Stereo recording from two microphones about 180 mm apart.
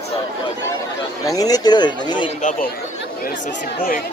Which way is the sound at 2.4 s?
45° left (ahead or behind).